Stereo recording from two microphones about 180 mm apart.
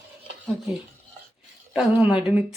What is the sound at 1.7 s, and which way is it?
Speech, 10° right (ahead or behind).